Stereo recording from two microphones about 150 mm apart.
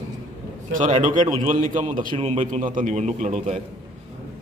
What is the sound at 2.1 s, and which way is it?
A man's voice, 45° right (ahead or behind).